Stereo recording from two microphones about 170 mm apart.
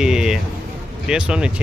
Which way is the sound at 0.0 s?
5° right (ahead or behind).